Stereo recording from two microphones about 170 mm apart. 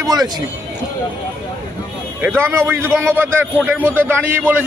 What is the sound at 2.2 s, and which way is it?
A man's voice, 15° right (ahead or behind).